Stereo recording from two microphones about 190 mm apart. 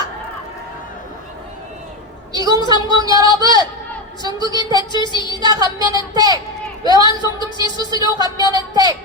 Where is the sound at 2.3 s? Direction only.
20° right (ahead or behind).